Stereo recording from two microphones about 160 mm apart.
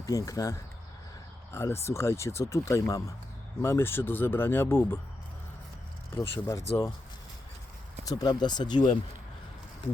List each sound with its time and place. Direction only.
0.0 s speech: 20° left (ahead or behind)
6.1 s speech: 15° left (ahead or behind)
8.0 s speech: 25° left (ahead or behind)